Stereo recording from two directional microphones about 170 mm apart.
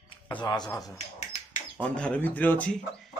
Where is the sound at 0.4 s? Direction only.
25° left (ahead or behind).